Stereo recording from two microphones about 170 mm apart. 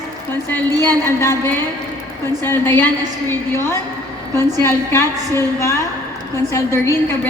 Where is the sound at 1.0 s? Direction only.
15° left (ahead or behind).